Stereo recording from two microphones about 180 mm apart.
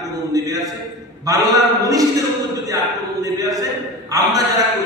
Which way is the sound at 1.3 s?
20° right (ahead or behind).